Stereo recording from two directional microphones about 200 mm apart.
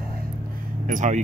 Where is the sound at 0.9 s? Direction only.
40° right (ahead or behind).